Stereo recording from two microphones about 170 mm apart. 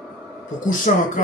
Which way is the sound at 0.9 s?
55° left (ahead or behind).